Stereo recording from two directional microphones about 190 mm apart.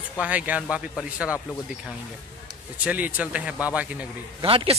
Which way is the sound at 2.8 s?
5° right (ahead or behind).